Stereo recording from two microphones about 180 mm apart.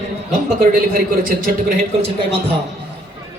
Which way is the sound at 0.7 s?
50° right (ahead or behind).